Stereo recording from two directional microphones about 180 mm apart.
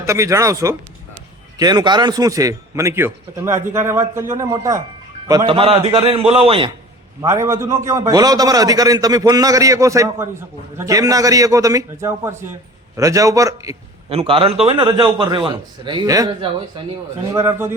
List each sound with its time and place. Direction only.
0.0 s a man's voice: 15° right (ahead or behind)
5.5 s a man's voice: 30° right (ahead or behind)
7.2 s a man's voice: 15° right (ahead or behind)
14.1 s a man's voice: 30° right (ahead or behind); by 17.7 s 15° right (ahead or behind)